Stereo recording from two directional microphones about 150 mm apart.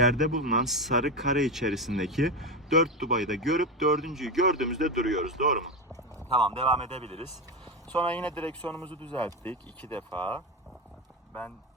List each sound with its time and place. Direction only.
0.0 s speech: centre (ahead or behind)
6.3 s a man's voice: 40° right (ahead or behind)
7.9 s speech: 10° left (ahead or behind)